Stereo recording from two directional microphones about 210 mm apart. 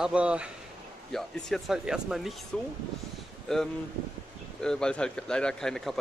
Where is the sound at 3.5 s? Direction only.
Centre (ahead or behind).